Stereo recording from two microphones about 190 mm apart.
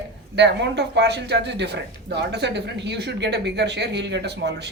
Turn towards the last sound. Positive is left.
turn(degrees=-65)  # may be behind; listen again after turning